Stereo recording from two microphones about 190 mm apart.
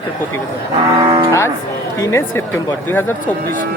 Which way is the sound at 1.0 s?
15° right (ahead or behind).